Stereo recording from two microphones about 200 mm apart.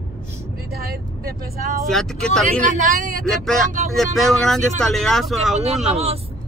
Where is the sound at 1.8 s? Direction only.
Centre (ahead or behind).